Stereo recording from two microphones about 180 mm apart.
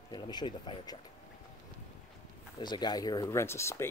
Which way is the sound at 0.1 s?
25° left (ahead or behind).